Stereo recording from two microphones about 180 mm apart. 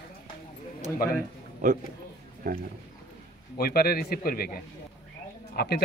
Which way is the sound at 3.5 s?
55° left (ahead or behind).